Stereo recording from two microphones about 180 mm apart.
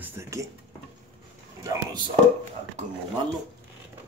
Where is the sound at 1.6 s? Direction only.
20° right (ahead or behind).